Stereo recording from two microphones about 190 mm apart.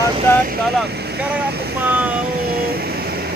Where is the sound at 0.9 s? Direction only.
60° right (ahead or behind).